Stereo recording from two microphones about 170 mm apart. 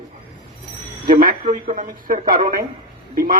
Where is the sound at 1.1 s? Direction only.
55° right (ahead or behind).